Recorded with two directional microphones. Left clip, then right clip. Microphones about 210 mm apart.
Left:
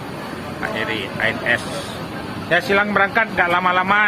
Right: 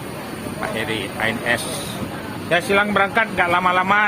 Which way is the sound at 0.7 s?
20° right (ahead or behind).